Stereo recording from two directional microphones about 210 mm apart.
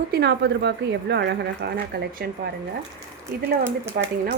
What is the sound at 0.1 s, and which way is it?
Speech, 55° right (ahead or behind).